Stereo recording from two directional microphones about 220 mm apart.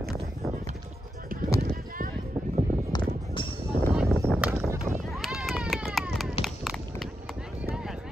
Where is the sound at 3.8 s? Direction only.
15° right (ahead or behind).